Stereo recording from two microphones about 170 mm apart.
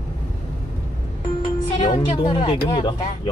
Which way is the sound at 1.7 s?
30° left (ahead or behind).